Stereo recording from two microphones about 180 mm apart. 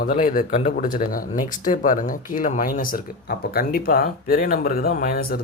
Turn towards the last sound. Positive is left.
turn(degrees=55)  # may be behind; listen again after turning